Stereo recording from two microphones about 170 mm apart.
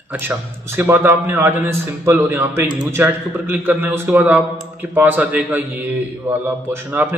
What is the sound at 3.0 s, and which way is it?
A man's voice, 15° right (ahead or behind).